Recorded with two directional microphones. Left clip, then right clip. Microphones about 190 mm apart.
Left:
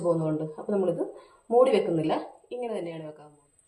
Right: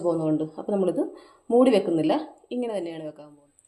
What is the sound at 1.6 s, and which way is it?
A woman's voice, 45° right (ahead or behind).